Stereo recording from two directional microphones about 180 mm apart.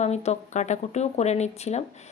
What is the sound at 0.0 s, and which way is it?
A woman's voice, 40° left (ahead or behind).